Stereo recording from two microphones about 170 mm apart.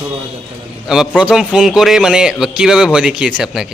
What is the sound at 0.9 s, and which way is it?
A man's voice, 5° right (ahead or behind).